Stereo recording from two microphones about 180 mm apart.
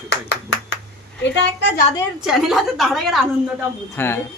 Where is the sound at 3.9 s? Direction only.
15° left (ahead or behind).